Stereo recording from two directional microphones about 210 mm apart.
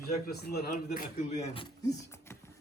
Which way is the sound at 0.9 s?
35° left (ahead or behind).